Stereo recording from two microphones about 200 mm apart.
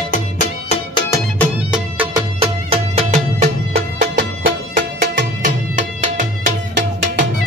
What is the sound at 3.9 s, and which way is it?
Music, 45° right (ahead or behind).